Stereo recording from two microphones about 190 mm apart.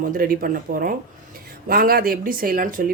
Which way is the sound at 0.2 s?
50° right (ahead or behind).